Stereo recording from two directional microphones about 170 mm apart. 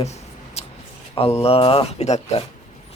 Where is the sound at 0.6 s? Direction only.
35° left (ahead or behind).